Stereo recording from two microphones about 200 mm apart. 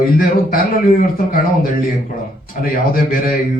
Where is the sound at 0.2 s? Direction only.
45° left (ahead or behind).